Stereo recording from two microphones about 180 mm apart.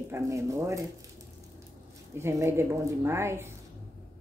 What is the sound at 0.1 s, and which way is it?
Speech, 15° right (ahead or behind).